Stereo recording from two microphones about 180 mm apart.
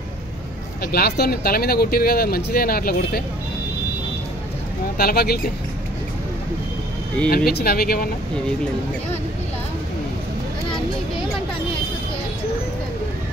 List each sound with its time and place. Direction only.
0.9 s speech: 60° left (ahead or behind)
4.9 s speech: 60° left (ahead or behind)
7.2 s speech: 55° left (ahead or behind)